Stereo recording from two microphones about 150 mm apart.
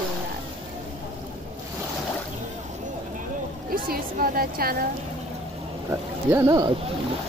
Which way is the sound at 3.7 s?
75° right (ahead or behind).